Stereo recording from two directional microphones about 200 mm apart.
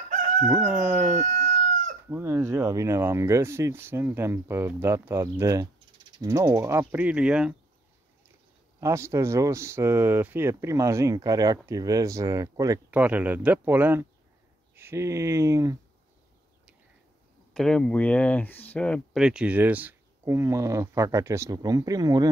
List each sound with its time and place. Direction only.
0.5 s howl: 5° right (ahead or behind)
1.2 s chicken: 40° right (ahead or behind)
2.0 s speech: 15° right (ahead or behind)
8.8 s speech: 15° right (ahead or behind)
17.6 s speech: 5° left (ahead or behind); by 22.3 s 20° right (ahead or behind)